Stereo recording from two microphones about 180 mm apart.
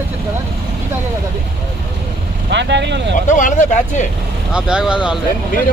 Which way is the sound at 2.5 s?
75° right (ahead or behind).